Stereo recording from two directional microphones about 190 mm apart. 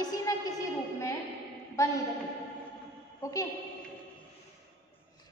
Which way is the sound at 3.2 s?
15° left (ahead or behind).